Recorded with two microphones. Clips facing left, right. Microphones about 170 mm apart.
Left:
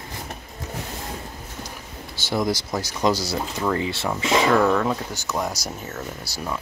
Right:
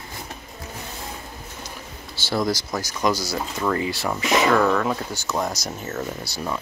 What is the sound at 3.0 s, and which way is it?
Speech, 30° left (ahead or behind).